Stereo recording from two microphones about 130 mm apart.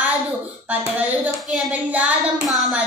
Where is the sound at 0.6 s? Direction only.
10° right (ahead or behind).